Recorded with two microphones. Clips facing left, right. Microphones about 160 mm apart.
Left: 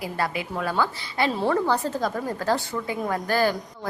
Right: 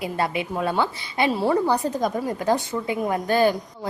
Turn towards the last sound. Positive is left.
turn(degrees=-20)  # may be behind; listen again after turning